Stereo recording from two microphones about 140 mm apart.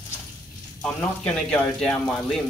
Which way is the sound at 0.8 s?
5° left (ahead or behind).